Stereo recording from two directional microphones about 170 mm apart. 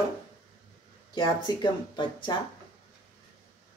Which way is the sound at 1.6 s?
30° left (ahead or behind).